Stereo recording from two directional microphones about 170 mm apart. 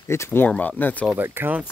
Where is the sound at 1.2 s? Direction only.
10° right (ahead or behind).